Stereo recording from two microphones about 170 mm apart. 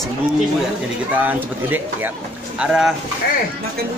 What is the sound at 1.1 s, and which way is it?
Speech, 10° right (ahead or behind).